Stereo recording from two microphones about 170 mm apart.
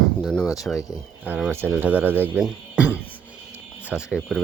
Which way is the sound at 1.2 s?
10° right (ahead or behind).